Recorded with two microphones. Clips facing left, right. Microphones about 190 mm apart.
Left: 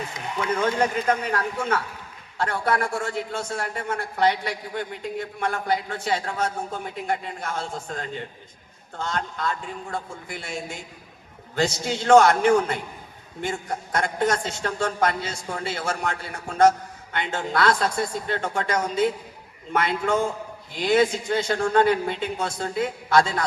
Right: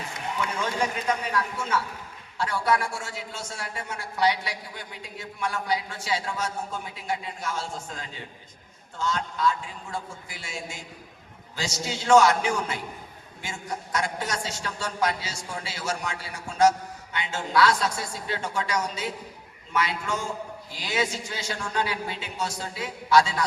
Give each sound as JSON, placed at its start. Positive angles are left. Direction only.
{"t": 0.6, "sound": "a man's voice", "side_deg": 50}